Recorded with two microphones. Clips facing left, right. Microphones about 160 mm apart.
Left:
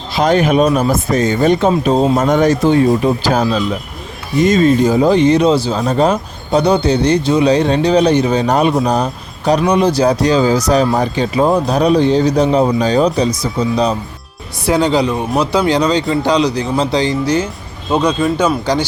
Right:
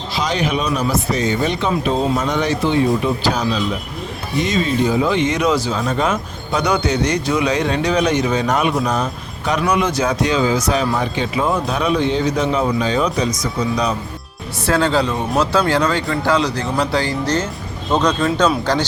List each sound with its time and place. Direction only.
0.1 s speech: 50° left (ahead or behind); by 13.9 s 30° left (ahead or behind)
14.6 s speech: 15° left (ahead or behind)